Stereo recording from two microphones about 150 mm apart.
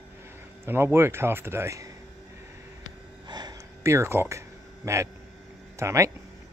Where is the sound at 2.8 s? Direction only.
30° right (ahead or behind).